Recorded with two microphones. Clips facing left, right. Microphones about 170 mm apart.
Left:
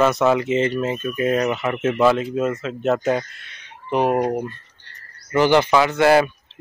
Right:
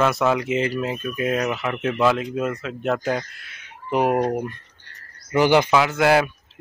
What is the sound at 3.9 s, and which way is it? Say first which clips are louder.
Speech: left 1 dB; 10° right (ahead or behind).